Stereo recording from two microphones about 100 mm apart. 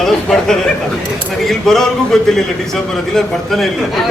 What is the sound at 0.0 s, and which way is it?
A man's voice, 5° left (ahead or behind).